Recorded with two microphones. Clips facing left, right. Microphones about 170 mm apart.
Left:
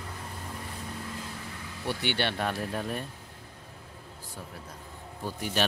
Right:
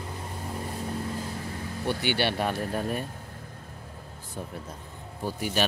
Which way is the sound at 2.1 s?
5° right (ahead or behind).